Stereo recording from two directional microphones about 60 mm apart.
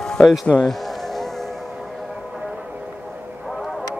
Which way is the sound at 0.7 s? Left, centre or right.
Centre.